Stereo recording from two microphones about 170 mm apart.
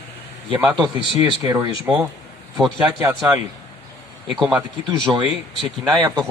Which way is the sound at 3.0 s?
20° right (ahead or behind).